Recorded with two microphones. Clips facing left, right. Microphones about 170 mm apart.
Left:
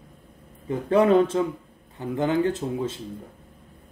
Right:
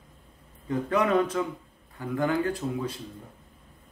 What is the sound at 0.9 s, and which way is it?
Speech, 30° left (ahead or behind).